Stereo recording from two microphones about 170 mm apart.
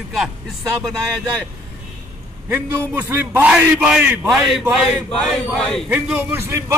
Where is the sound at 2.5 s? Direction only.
15° right (ahead or behind); by 5.8 s 5° left (ahead or behind).